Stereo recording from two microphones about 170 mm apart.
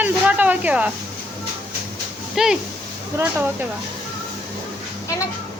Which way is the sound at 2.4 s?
Centre (ahead or behind).